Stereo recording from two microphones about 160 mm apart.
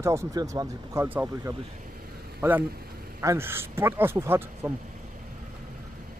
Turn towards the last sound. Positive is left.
turn(degrees=-15)  # may be behind; listen again after turning